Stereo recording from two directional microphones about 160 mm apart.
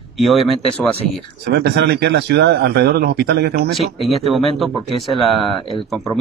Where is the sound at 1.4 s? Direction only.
90° right.